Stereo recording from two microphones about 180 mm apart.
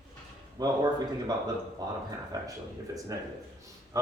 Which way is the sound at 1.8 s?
20° right (ahead or behind).